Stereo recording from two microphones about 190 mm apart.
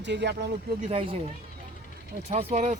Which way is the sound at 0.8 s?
30° right (ahead or behind).